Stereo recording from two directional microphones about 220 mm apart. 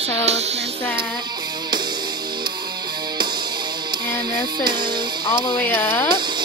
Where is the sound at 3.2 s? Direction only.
20° right (ahead or behind).